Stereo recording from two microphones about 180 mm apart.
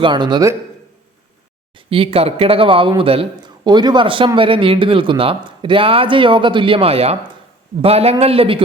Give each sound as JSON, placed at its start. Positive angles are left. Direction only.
{"t": 0.0, "sound": "speech", "side_deg": -25}
{"t": 1.7, "sound": "speech", "side_deg": -30}